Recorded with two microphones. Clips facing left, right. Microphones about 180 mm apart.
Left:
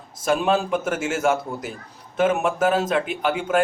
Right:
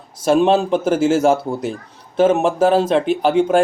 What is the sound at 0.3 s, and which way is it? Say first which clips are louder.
Speech: right 6 dB; 30° right (ahead or behind).